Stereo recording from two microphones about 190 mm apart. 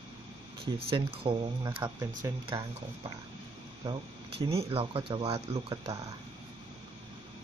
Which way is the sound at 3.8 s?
25° right (ahead or behind).